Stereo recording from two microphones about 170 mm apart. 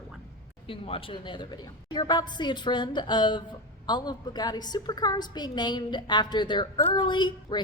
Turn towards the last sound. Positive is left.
turn(degrees=25)  # may be behind; listen again after turning